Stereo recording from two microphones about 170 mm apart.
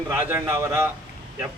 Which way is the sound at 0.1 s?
15° right (ahead or behind).